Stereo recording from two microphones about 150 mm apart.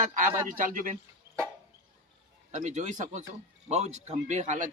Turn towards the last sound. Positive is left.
turn(degrees=-55)  # may be behind; listen again after turning